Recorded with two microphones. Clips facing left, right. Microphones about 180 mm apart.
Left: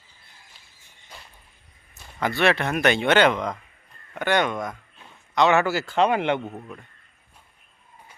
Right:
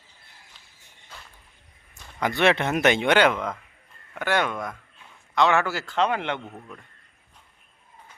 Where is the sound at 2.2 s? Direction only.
20° right (ahead or behind); by 6.8 s 15° left (ahead or behind).